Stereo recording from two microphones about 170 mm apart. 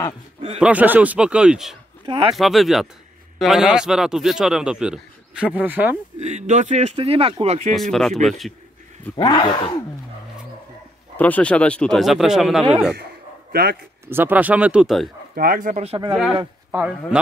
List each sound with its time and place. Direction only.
0.6 s a man's voice: 10° right (ahead or behind)
6.1 s speech: 45° right (ahead or behind)
7.7 s a man's voice: centre (ahead or behind)
9.1 s speech: 25° left (ahead or behind)
11.1 s a man's voice: 10° left (ahead or behind)
13.5 s a man's voice: 65° right (ahead or behind)
14.0 s speech: 10° right (ahead or behind)
15.3 s speech: 55° right (ahead or behind)
15.8 s speech: 35° right (ahead or behind)
16.1 s a man's voice: 5° right (ahead or behind)